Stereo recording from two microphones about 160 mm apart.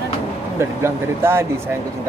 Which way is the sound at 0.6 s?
15° right (ahead or behind).